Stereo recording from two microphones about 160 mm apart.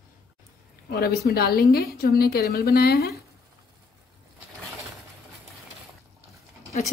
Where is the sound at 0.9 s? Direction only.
75° left (ahead or behind).